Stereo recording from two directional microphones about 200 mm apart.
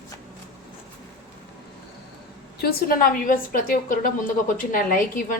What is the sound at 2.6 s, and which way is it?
A woman's voice, 50° left (ahead or behind).